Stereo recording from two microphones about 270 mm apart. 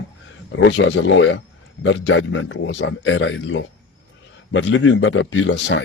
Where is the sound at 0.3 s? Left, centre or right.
Left.